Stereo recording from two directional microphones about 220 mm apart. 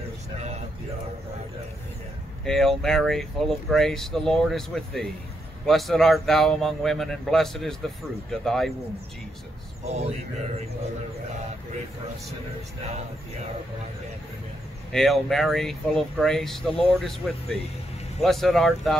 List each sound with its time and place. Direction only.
2.4 s speech: centre (ahead or behind)
9.8 s speech: 30° right (ahead or behind)
14.9 s speech: centre (ahead or behind)